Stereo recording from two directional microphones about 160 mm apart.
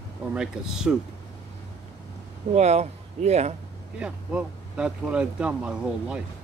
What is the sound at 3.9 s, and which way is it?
Speech, 5° right (ahead or behind).